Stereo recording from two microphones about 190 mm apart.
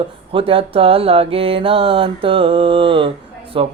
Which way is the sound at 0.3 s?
30° right (ahead or behind).